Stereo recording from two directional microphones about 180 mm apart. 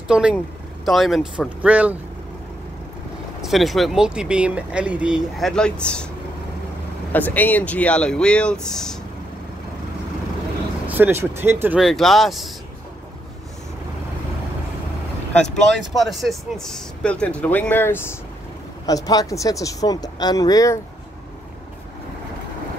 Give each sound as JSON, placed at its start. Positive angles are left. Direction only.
{"t": 0.1, "sound": "speech", "side_deg": -5}
{"t": 3.4, "sound": "speech", "side_deg": 0}
{"t": 7.1, "sound": "speech", "side_deg": 10}
{"t": 10.9, "sound": "speech", "side_deg": -10}
{"t": 11.8, "sound": "speech", "side_deg": 0}
{"t": 15.3, "sound": "speech", "side_deg": 5}